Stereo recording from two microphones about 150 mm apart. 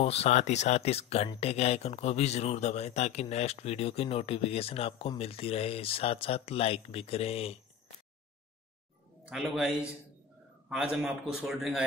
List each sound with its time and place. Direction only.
0.0 s speech: 45° left (ahead or behind)
9.2 s a man's voice: centre (ahead or behind)